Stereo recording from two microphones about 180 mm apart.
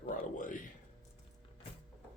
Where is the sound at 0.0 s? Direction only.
45° left (ahead or behind).